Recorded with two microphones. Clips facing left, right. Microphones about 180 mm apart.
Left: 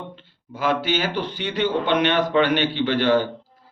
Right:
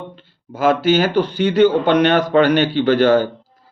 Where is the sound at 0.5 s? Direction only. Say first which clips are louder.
Right 8 dB; 45° right (ahead or behind).